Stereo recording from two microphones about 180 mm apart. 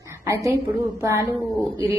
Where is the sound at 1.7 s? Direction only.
15° right (ahead or behind).